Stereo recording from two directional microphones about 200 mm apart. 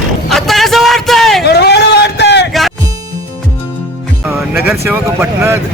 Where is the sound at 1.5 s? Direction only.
55° left (ahead or behind).